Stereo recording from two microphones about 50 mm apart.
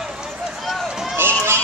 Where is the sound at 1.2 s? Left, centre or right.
Right.